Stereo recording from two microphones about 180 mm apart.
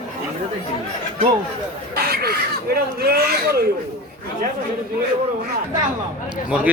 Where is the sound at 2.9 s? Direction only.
60° right (ahead or behind).